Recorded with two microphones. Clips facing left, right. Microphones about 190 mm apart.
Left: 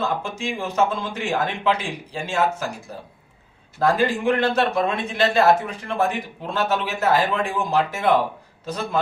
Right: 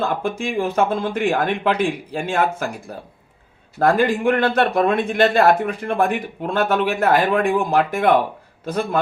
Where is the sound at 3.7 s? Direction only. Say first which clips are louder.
Right 3 dB; 55° right (ahead or behind).